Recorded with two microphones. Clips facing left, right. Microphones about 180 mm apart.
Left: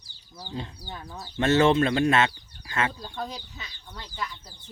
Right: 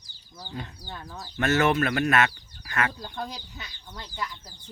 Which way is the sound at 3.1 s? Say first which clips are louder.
Left 1 dB; 15° right (ahead or behind).